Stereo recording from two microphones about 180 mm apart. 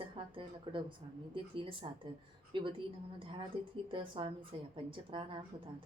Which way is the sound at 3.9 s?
30° right (ahead or behind).